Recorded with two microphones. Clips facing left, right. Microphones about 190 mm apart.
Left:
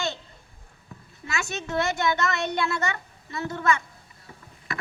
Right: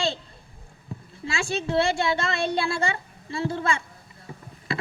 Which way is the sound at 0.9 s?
30° right (ahead or behind).